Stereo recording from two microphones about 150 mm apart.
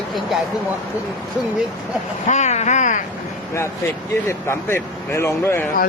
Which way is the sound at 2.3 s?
50° left (ahead or behind).